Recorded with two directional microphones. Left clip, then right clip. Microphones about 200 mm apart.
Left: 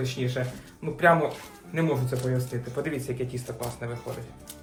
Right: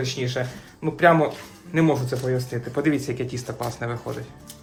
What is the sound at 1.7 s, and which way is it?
Speech, 40° right (ahead or behind).